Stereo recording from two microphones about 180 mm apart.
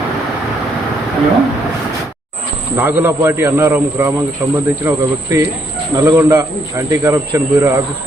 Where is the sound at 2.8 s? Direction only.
10° right (ahead or behind).